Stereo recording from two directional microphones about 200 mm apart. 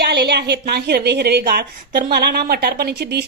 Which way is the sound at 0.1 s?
55° right (ahead or behind).